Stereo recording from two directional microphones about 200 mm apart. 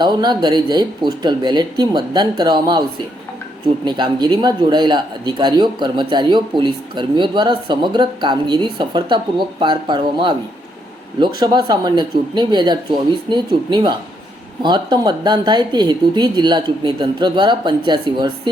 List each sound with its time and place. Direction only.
0.0 s speech: 20° right (ahead or behind)
3.8 s speech: 20° right (ahead or behind)